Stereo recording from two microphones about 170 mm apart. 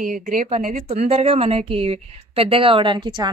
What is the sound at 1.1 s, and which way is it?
A woman's voice, 35° right (ahead or behind).